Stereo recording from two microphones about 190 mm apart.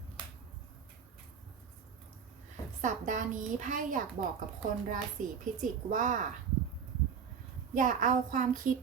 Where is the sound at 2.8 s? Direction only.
40° right (ahead or behind).